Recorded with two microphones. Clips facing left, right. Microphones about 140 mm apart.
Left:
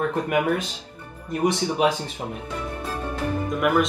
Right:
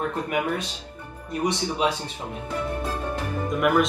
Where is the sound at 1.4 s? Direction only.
50° left (ahead or behind).